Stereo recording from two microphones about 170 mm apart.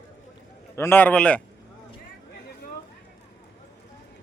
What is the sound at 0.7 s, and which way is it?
Speech, 10° left (ahead or behind).